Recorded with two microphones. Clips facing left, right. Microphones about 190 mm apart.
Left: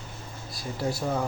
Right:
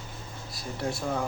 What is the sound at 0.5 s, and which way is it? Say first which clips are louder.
Speech: left 2 dB; 5° left (ahead or behind).